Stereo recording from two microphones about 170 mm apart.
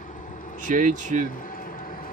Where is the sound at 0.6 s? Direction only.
50° right (ahead or behind).